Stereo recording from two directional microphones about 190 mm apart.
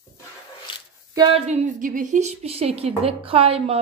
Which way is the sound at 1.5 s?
40° right (ahead or behind).